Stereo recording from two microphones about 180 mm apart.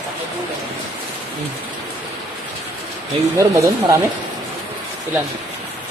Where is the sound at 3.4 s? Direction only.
15° right (ahead or behind).